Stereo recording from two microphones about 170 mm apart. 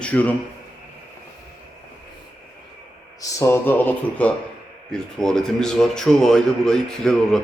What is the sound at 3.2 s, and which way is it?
A man's voice, 15° left (ahead or behind).